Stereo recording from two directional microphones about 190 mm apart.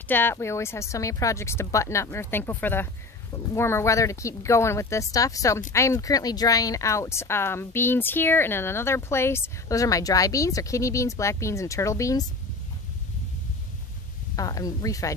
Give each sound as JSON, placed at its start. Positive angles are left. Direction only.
{"t": 0.1, "sound": "speech", "side_deg": 10}
{"t": 14.3, "sound": "speech", "side_deg": 20}